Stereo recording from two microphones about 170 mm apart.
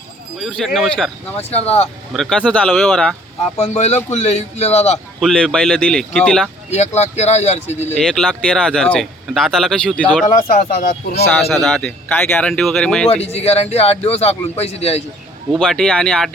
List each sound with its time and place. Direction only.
0.3 s speech: centre (ahead or behind)
1.4 s a man's voice: 40° left (ahead or behind)
2.1 s speech: 5° left (ahead or behind)
3.6 s a man's voice: 40° left (ahead or behind)
5.2 s speech: 5° left (ahead or behind)
6.7 s a man's voice: 40° left (ahead or behind)
7.9 s speech: 5° left (ahead or behind)
10.5 s speech: 50° left (ahead or behind)
11.3 s speech: centre (ahead or behind)
13.2 s a man's voice: 35° left (ahead or behind)
15.5 s speech: 5° left (ahead or behind)